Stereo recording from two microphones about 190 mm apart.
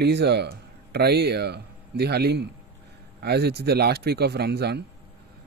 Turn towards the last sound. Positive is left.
turn(degrees=-60)  # may be behind; listen again after turning